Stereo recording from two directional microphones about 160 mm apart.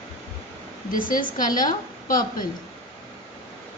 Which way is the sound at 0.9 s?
60° left (ahead or behind).